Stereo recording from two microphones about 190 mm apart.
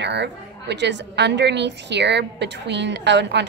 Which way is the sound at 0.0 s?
65° right (ahead or behind).